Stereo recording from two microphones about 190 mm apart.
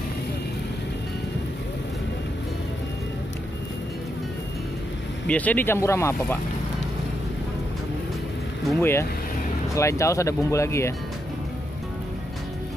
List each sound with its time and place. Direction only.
5.3 s speech: 10° left (ahead or behind)
8.6 s speech: 10° left (ahead or behind)